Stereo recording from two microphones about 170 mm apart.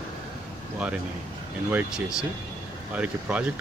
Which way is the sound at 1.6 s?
10° right (ahead or behind).